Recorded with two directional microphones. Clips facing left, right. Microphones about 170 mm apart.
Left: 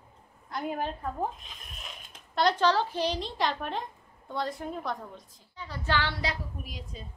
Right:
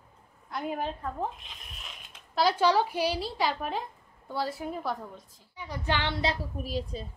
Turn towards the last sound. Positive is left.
turn(degrees=-35)  # may be behind; listen again after turning